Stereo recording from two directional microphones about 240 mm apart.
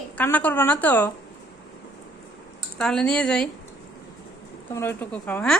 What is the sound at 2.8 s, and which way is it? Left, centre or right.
Speech, centre.